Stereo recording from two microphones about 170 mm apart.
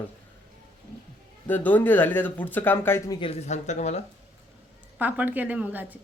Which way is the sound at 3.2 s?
40° left (ahead or behind).